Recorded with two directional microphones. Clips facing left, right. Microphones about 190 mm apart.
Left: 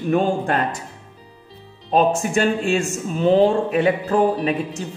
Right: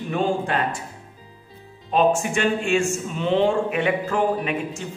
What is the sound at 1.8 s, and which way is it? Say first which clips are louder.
Speech: left 1 dB; 40° left (ahead or behind).